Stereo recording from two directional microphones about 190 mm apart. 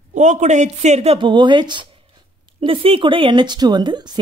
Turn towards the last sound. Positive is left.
turn(degrees=-20)  # may be behind; listen again after turning